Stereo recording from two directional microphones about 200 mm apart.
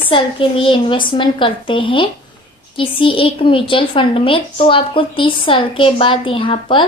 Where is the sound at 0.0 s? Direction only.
25° left (ahead or behind).